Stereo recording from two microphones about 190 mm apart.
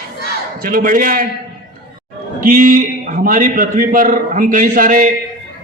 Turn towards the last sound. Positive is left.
turn(degrees=-45)  # may be behind; listen again after turning